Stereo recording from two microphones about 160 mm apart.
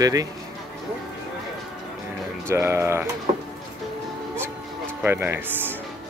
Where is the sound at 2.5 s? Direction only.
15° right (ahead or behind).